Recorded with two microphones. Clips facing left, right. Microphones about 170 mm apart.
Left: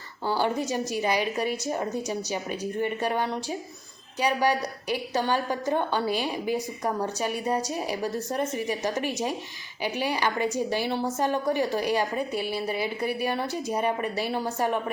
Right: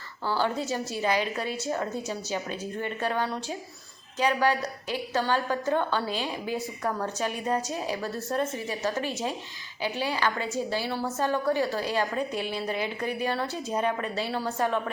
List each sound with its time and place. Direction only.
0.3 s a woman's voice: 15° left (ahead or behind)